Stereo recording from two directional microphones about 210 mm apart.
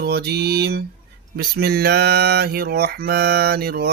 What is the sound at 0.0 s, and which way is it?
Mantra, 50° right (ahead or behind).